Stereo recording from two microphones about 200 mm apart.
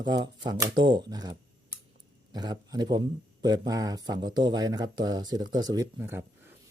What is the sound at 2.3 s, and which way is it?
Speech, 20° right (ahead or behind).